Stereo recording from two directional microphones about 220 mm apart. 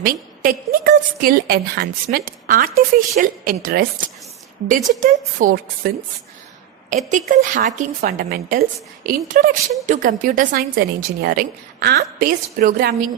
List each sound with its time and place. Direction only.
0.0 s a woman's voice: 40° right (ahead or behind)
6.9 s a woman's voice: 35° right (ahead or behind)